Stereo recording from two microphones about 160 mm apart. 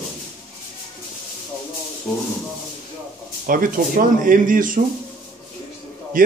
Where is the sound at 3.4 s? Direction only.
60° right (ahead or behind).